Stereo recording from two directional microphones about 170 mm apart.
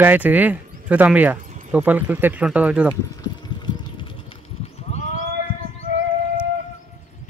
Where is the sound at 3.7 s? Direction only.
30° left (ahead or behind).